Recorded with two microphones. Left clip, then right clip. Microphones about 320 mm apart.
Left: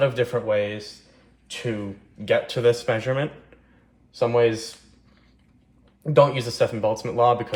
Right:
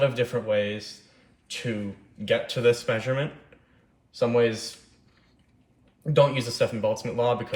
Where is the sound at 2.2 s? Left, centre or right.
Centre.